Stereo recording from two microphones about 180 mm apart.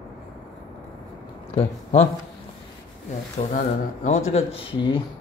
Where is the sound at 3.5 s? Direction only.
45° left (ahead or behind).